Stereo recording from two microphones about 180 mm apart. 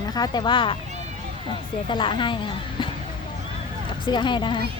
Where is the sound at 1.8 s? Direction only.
30° left (ahead or behind).